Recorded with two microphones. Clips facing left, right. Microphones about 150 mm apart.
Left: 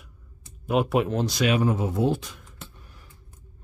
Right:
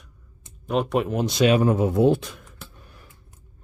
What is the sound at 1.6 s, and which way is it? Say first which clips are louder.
Speech: right 5 dB; 55° right (ahead or behind).